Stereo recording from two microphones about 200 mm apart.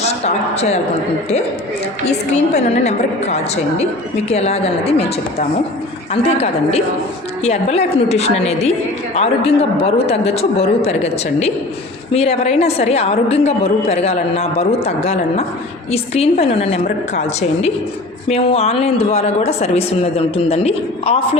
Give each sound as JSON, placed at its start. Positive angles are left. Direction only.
{"t": 0.0, "sound": "a man's voice", "side_deg": 30}
{"t": 2.0, "sound": "a woman's voice", "side_deg": 35}